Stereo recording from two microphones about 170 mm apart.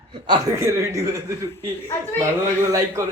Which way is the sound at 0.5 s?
15° right (ahead or behind).